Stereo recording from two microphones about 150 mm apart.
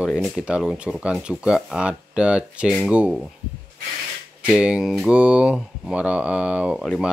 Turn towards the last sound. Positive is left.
turn(degrees=5)  # may be behind; listen again after turning